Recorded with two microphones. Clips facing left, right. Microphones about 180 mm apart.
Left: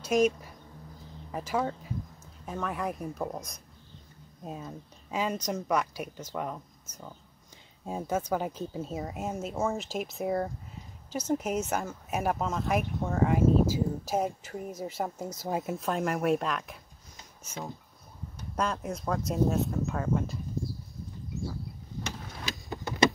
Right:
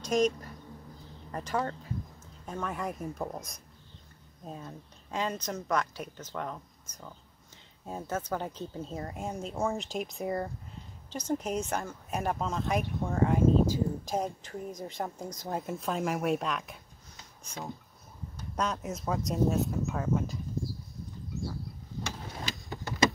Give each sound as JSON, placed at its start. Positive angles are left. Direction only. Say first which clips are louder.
{"t": 0.0, "sound": "a woman's voice", "louder": "left 2 dB", "side_deg": 10}